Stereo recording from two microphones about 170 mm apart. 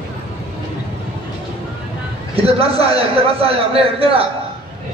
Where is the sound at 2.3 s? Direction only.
35° right (ahead or behind).